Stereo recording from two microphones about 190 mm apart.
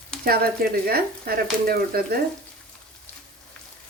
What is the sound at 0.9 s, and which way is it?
Speech, 55° right (ahead or behind).